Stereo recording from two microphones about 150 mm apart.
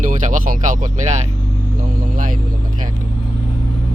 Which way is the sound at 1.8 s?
65° right (ahead or behind).